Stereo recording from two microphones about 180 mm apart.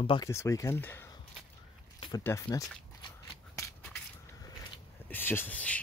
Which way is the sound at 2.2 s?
15° left (ahead or behind).